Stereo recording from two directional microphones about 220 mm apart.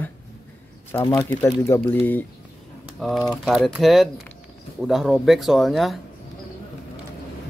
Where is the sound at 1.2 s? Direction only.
15° left (ahead or behind).